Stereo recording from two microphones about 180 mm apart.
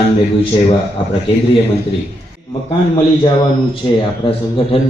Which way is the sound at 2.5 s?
25° left (ahead or behind).